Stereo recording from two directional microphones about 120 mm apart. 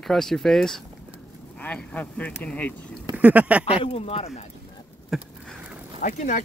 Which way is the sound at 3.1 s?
10° right (ahead or behind).